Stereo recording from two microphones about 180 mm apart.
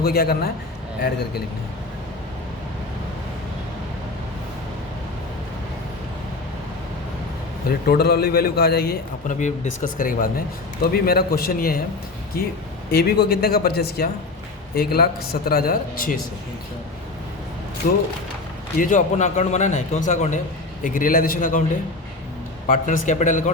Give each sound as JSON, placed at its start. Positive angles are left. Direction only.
{"t": 0.0, "sound": "speech", "side_deg": 60}
{"t": 7.7, "sound": "speech", "side_deg": 60}
{"t": 9.2, "sound": "speech", "side_deg": 45}
{"t": 12.9, "sound": "speech", "side_deg": 60}
{"t": 17.8, "sound": "a man's voice", "side_deg": 50}
{"t": 22.6, "sound": "a man's voice", "side_deg": 45}